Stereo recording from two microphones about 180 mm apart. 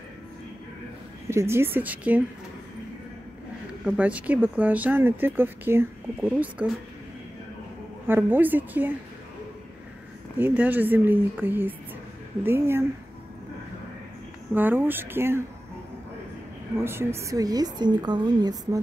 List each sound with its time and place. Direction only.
1.2 s speech: 15° right (ahead or behind)
3.8 s speech: 5° right (ahead or behind)
8.1 s speech: 10° right (ahead or behind)
10.3 s speech: 10° right (ahead or behind)
14.5 s speech: 10° right (ahead or behind)
16.7 s a woman's voice: 15° right (ahead or behind)